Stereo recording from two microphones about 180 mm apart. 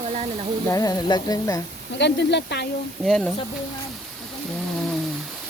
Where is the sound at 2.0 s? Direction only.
70° left (ahead or behind).